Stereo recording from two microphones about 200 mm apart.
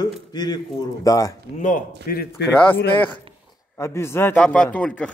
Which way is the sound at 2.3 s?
55° left (ahead or behind).